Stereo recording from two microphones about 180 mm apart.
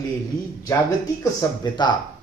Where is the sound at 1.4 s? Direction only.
15° left (ahead or behind).